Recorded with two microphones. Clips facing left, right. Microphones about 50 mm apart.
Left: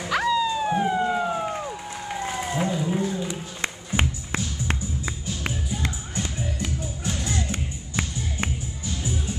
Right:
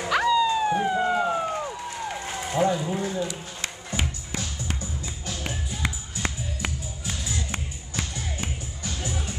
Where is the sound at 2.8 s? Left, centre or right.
Centre.